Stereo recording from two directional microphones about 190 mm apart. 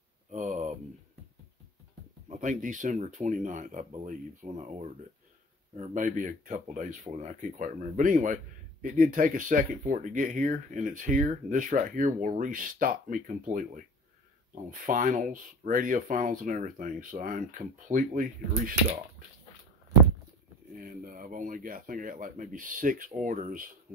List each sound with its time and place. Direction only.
0.3 s a sound: 40° right (ahead or behind)
2.2 s speech: 40° right (ahead or behind)
20.7 s speech: 50° right (ahead or behind)